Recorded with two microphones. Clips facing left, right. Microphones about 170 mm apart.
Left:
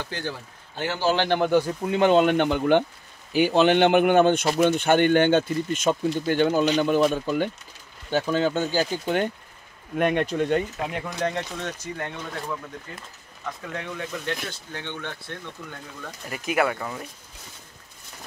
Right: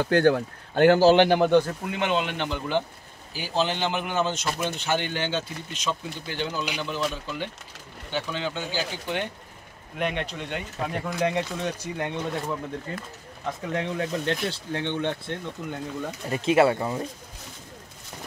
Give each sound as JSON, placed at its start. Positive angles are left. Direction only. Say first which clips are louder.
{"t": 0.0, "sound": "speech", "louder": "right 12 dB", "side_deg": -60}
{"t": 1.1, "sound": "speech", "louder": "right 5 dB", "side_deg": -15}
{"t": 1.4, "sound": "speech", "louder": "right 1 dB", "side_deg": 10}
{"t": 1.9, "sound": "speech", "louder": "left 8 dB", "side_deg": 35}
{"t": 11.1, "sound": "speech", "louder": "right 5 dB", "side_deg": -10}